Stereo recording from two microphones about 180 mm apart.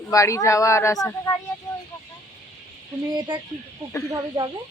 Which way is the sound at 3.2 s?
25° right (ahead or behind).